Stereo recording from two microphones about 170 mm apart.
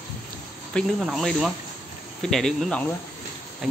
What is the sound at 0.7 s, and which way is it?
Speech, centre (ahead or behind).